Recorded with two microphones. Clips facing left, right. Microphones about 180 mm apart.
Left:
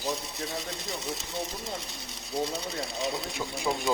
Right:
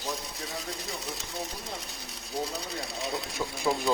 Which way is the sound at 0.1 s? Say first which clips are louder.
Left 2 dB; centre (ahead or behind).